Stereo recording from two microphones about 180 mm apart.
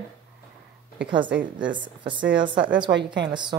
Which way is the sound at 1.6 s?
25° right (ahead or behind).